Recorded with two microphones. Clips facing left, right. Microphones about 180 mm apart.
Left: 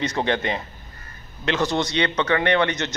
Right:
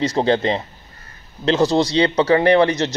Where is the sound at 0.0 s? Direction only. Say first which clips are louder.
Right 6 dB; 35° right (ahead or behind).